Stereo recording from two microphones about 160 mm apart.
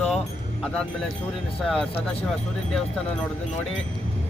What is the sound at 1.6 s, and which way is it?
Speech, 5° left (ahead or behind).